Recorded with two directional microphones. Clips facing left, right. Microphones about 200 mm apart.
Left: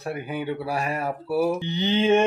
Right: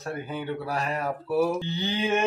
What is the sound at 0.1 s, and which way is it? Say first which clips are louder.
Speech: left 2 dB; 15° left (ahead or behind).